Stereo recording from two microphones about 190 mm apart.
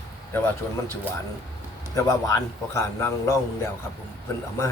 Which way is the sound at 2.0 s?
15° left (ahead or behind).